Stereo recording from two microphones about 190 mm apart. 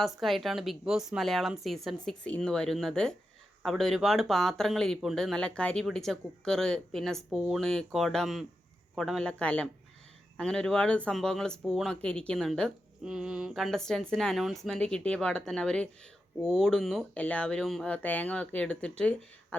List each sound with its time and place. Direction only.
0.0 s speech: centre (ahead or behind)